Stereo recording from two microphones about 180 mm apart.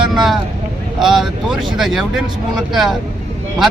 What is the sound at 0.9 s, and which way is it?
Speech, centre (ahead or behind).